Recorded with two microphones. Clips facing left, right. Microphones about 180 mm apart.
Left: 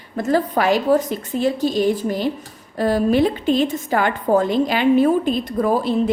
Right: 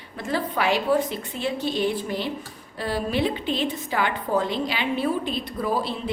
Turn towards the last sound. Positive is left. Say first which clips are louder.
# left 7 dB
turn(degrees=45)  # may be behind; listen again after turning